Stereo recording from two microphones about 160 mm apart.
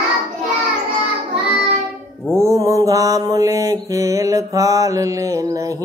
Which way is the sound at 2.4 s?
20° right (ahead or behind).